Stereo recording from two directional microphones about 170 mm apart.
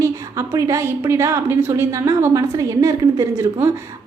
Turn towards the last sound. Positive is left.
turn(degrees=-15)  # may be behind; listen again after turning